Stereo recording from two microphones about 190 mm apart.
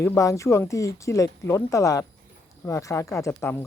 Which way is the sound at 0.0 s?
15° left (ahead or behind).